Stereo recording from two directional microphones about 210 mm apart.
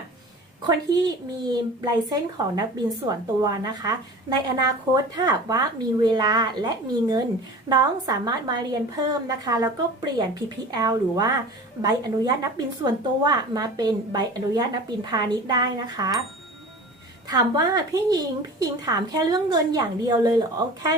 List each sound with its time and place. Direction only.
0.6 s a woman's voice: 20° right (ahead or behind)
17.2 s a woman's voice: 20° right (ahead or behind)